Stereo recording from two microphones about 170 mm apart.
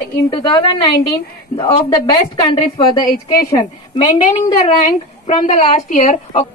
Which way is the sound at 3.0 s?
55° left (ahead or behind).